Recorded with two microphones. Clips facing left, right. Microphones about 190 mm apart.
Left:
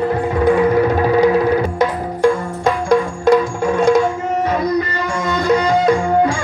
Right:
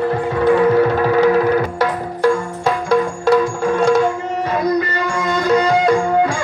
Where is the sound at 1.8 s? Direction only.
5° right (ahead or behind).